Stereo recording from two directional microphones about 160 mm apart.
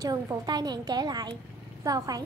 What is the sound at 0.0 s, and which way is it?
A woman's voice, 25° right (ahead or behind).